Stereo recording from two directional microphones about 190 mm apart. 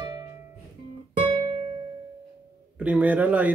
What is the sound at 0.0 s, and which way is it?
Music, 20° right (ahead or behind).